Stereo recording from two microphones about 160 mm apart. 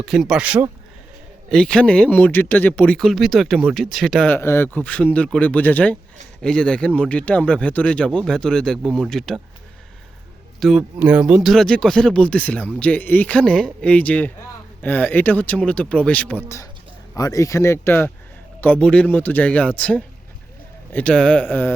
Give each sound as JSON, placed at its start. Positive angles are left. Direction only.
{"t": 0.0, "sound": "speech", "side_deg": -5}
{"t": 1.5, "sound": "speech", "side_deg": 5}
{"t": 4.4, "sound": "speech", "side_deg": 15}
{"t": 10.6, "sound": "speech", "side_deg": 0}
{"t": 17.2, "sound": "speech", "side_deg": 20}